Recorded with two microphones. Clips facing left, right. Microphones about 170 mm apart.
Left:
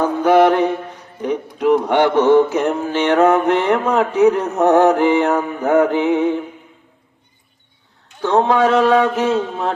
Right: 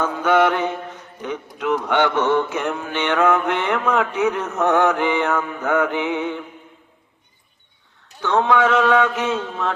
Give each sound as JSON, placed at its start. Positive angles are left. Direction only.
{"t": 0.0, "sound": "mantra", "side_deg": 35}
{"t": 3.8, "sound": "a man's voice", "side_deg": 25}
{"t": 4.2, "sound": "mantra", "side_deg": 30}
{"t": 8.2, "sound": "mantra", "side_deg": 35}